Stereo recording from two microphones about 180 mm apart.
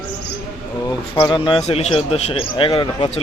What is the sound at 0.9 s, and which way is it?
Speech, 20° left (ahead or behind).